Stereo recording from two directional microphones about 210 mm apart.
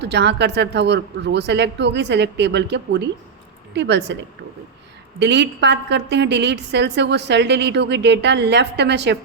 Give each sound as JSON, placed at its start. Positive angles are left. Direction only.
{"t": 0.0, "sound": "a woman's voice", "side_deg": -55}
{"t": 5.2, "sound": "a woman's voice", "side_deg": -55}